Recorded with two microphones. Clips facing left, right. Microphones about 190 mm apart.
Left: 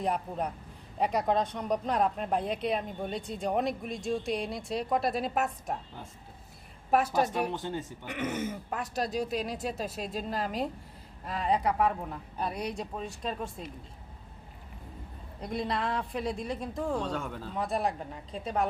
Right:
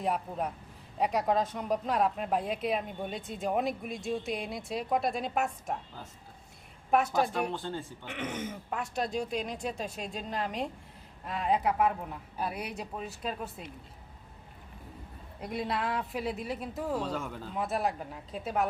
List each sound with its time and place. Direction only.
0.0 s speech: centre (ahead or behind)
7.5 s a man's voice: 20° left (ahead or behind)
8.0 s speech: 10° left (ahead or behind)
15.4 s speech: 5° right (ahead or behind)